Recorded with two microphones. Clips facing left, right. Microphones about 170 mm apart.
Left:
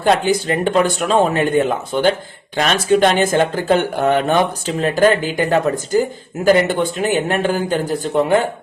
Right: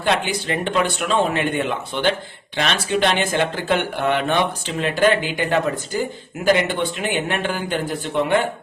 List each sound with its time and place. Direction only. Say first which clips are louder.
0.0 s speech: left 6 dB; 40° left (ahead or behind)